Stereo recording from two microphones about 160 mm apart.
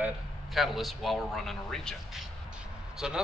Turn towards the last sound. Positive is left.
turn(degrees=-5)  # may be behind; listen again after turning